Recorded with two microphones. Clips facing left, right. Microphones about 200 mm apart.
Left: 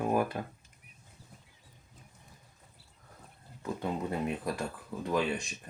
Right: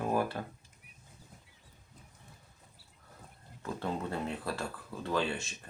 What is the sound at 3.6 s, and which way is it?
Speech, 15° left (ahead or behind).